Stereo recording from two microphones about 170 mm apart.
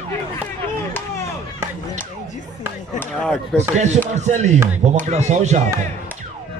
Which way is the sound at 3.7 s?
40° right (ahead or behind).